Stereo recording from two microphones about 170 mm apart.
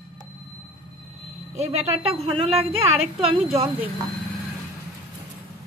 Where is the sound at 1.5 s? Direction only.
40° right (ahead or behind).